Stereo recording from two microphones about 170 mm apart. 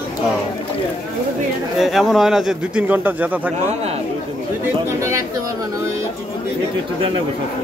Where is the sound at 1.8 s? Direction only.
Centre (ahead or behind).